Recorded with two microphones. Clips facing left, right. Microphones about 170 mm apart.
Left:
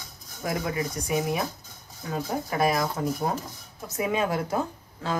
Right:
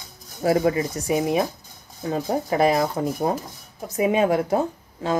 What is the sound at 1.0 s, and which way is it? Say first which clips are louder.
Speech: right 6 dB; 25° right (ahead or behind).